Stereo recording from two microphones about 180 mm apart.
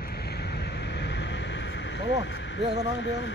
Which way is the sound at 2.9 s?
90° left.